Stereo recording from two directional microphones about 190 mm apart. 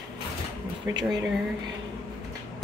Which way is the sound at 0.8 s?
10° right (ahead or behind).